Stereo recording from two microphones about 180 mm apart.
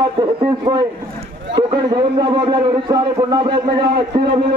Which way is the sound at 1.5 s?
25° right (ahead or behind).